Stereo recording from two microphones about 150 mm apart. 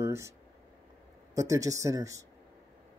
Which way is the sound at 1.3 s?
20° right (ahead or behind).